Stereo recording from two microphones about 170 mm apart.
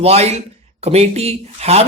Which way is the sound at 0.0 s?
40° right (ahead or behind).